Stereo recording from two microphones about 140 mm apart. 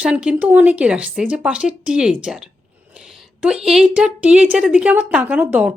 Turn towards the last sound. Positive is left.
turn(degrees=-10)  # may be behind; listen again after turning